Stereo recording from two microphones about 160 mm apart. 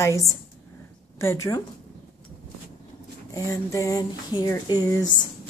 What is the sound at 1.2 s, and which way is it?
Speech, 15° left (ahead or behind).